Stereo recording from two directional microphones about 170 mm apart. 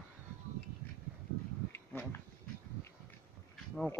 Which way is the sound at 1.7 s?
15° left (ahead or behind).